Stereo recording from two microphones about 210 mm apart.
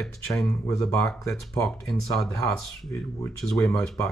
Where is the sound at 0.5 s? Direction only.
15° left (ahead or behind).